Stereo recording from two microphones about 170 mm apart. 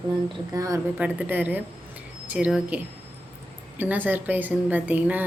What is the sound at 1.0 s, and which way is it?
Speech, 10° right (ahead or behind).